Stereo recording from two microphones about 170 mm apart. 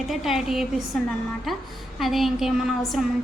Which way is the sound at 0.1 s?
Centre (ahead or behind).